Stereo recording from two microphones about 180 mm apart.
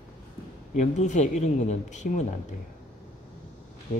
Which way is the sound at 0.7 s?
40° left (ahead or behind).